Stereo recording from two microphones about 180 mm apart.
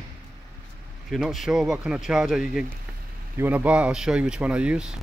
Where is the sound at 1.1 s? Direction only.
Centre (ahead or behind).